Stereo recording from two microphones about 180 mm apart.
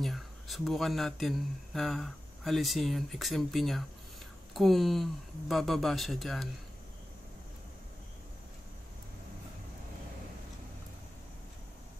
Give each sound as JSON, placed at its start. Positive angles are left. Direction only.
{"t": 0.0, "sound": "a man's voice", "side_deg": 0}